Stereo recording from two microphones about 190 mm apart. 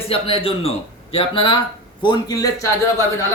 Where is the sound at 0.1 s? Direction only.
30° left (ahead or behind).